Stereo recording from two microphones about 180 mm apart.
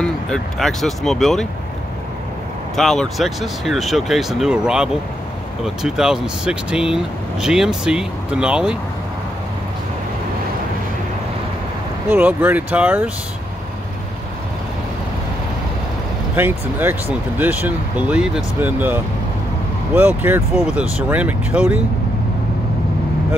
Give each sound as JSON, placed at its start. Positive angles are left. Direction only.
{"t": 0.0, "sound": "speech", "side_deg": 5}
{"t": 2.7, "sound": "speech", "side_deg": 0}
{"t": 12.1, "sound": "speech", "side_deg": -10}
{"t": 16.3, "sound": "speech", "side_deg": -10}
{"t": 20.0, "sound": "speech", "side_deg": -10}